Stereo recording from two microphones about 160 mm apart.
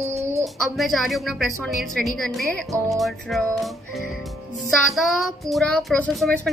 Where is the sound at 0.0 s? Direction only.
20° right (ahead or behind).